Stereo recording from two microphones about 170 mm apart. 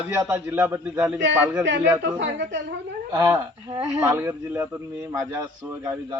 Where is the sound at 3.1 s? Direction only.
15° right (ahead or behind).